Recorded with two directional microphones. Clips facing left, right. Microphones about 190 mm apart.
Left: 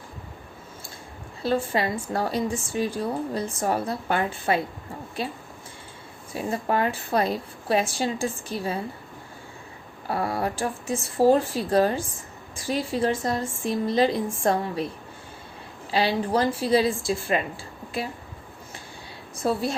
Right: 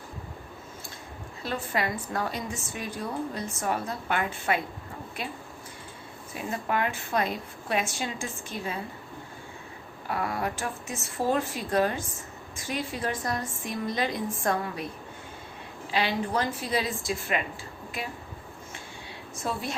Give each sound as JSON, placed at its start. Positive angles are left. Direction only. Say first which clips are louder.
{"t": 1.4, "sound": "a woman's voice", "louder": "left 6 dB", "side_deg": 30}
{"t": 6.3, "sound": "a woman's voice", "louder": "left 4 dB", "side_deg": 35}
{"t": 10.1, "sound": "a woman's voice", "louder": "left 4 dB", "side_deg": 30}
{"t": 15.9, "sound": "a woman's voice", "louder": "left 5 dB", "side_deg": 35}
{"t": 19.4, "sound": "a woman's voice", "louder": "left 7 dB", "side_deg": 35}